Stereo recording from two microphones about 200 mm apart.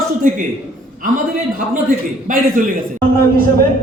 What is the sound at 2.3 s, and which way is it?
Speech, 45° right (ahead or behind).